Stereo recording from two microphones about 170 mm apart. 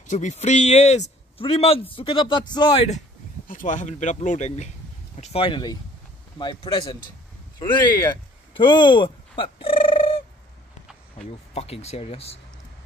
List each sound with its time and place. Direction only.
0.0 s speech: 45° left (ahead or behind)
3.4 s speech: 50° left (ahead or behind); by 9.7 s 30° left (ahead or behind)
9.8 s a sound: 30° left (ahead or behind)
11.1 s speech: 40° left (ahead or behind)